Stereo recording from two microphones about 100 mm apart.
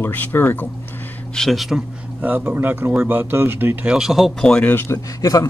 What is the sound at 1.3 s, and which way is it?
Speech, centre (ahead or behind).